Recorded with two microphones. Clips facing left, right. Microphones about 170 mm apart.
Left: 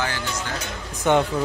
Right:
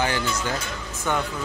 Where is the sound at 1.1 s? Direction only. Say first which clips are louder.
Left 7 dB; 20° left (ahead or behind).